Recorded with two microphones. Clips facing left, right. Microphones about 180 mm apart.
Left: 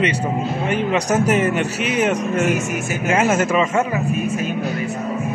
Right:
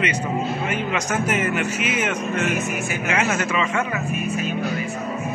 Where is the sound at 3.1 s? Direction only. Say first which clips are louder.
Left 6 dB; 45° left (ahead or behind).